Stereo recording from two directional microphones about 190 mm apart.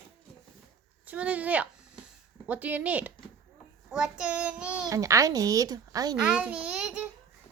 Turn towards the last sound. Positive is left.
turn(degrees=-5)  # may be behind; listen again after turning